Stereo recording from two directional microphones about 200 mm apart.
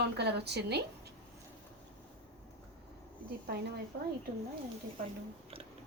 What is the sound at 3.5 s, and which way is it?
Speech, 55° right (ahead or behind).